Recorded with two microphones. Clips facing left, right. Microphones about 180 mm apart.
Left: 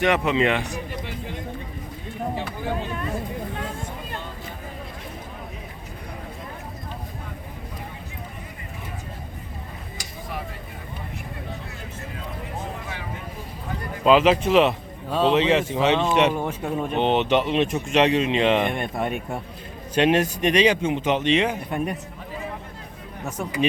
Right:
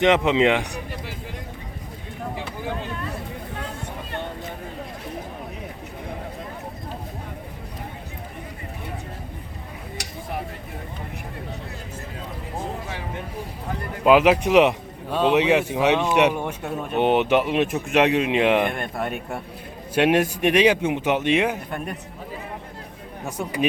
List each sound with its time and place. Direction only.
0.0 s speech: 20° right (ahead or behind)
10.0 s a sound: 70° right (ahead or behind)
14.0 s speech: 10° right (ahead or behind)